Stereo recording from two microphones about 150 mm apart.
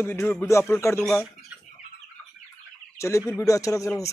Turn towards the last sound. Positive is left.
turn(degrees=20)  # may be behind; listen again after turning